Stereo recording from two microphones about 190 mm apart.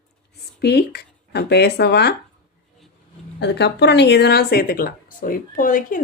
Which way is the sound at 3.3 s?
65° left (ahead or behind).